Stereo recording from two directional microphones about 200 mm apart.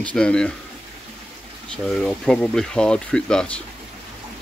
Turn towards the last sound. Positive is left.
turn(degrees=5)  # may be behind; listen again after turning